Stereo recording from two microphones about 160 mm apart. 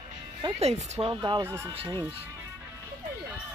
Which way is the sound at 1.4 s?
15° right (ahead or behind).